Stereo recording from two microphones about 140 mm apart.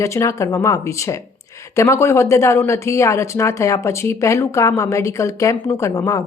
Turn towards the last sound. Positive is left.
turn(degrees=25)  # may be behind; listen again after turning